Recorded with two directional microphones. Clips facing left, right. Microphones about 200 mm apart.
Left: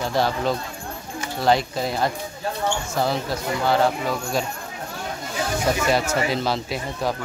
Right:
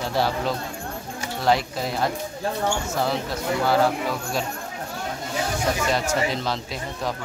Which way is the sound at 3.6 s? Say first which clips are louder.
Left 1 dB; 5° right (ahead or behind).